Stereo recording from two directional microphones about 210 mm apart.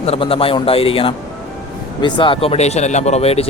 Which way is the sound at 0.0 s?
30° left (ahead or behind).